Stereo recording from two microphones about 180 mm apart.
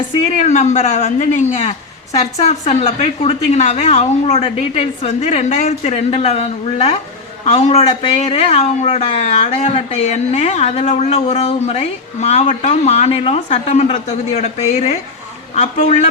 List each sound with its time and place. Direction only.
0.4 s speech: 40° left (ahead or behind)